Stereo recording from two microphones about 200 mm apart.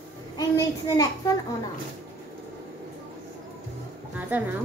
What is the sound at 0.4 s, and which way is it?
A child's voice, 20° left (ahead or behind).